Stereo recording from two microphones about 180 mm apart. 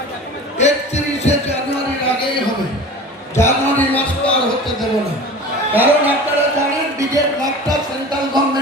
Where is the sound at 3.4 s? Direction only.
10° left (ahead or behind).